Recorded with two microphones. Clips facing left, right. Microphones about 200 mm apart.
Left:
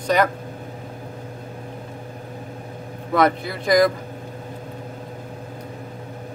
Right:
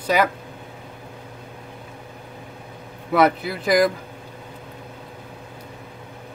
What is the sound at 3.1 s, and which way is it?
Speech, 5° right (ahead or behind).